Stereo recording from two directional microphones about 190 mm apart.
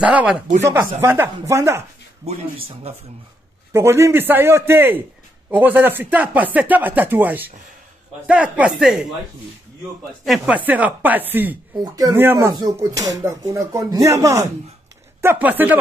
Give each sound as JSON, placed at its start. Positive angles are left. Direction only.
{"t": 0.0, "sound": "speech", "side_deg": -5}
{"t": 2.2, "sound": "speech", "side_deg": -35}
{"t": 3.7, "sound": "speech", "side_deg": -15}
{"t": 10.2, "sound": "speech", "side_deg": -5}